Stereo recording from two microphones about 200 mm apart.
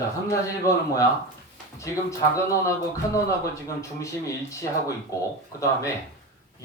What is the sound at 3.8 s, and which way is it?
Speech, 15° left (ahead or behind).